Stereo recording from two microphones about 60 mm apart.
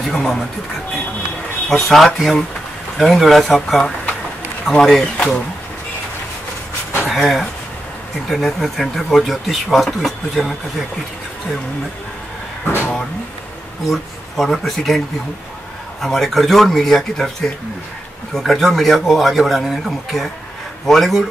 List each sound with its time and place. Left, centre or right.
0.0 s speech: centre
1.7 s speech: centre
7.1 s speech: centre
12.6 s a sound: left
13.8 s speech: centre
16.0 s speech: centre